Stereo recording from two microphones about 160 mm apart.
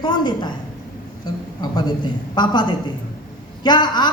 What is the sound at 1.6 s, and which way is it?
A man's voice, 25° left (ahead or behind).